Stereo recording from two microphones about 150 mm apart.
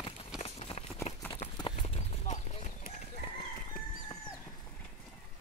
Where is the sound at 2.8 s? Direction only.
65° left (ahead or behind).